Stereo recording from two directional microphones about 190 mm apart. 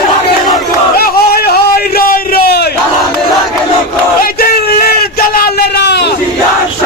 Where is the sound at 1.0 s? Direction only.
55° left (ahead or behind).